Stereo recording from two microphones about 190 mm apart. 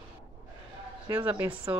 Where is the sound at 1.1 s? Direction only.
10° right (ahead or behind).